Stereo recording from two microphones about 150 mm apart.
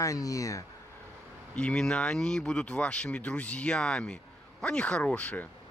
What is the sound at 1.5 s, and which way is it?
Speech, 5° left (ahead or behind).